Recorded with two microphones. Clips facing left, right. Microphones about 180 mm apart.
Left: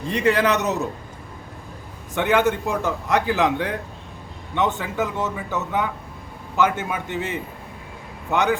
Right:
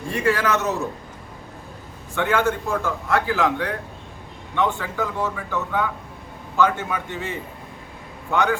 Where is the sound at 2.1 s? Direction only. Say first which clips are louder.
Left 2 dB; 20° left (ahead or behind).